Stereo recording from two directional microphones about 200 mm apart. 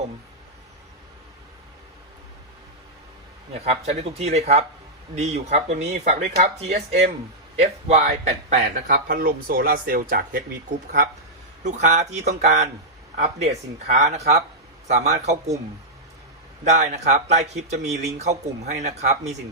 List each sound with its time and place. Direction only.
3.6 s speech: 30° right (ahead or behind)
11.6 s speech: 35° right (ahead or behind)
16.6 s speech: 35° right (ahead or behind)